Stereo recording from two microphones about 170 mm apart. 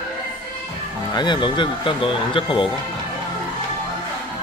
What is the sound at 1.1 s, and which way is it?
Speech, 25° left (ahead or behind).